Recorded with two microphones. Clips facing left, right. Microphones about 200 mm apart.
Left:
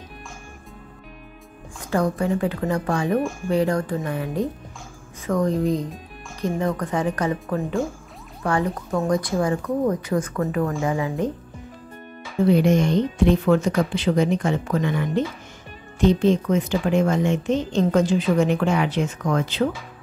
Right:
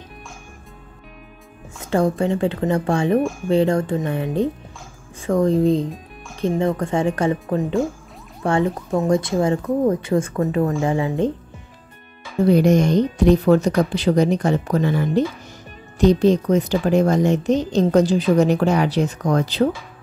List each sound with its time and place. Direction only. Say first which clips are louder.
1.9 s speech: right 3 dB; 25° right (ahead or behind)
12.4 s a woman's voice: right 3 dB; 40° right (ahead or behind)